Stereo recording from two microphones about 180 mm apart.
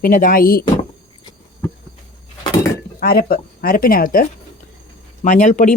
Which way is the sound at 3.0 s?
55° left (ahead or behind).